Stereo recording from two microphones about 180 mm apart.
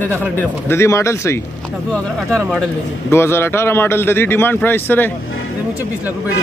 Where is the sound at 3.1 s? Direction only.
15° left (ahead or behind).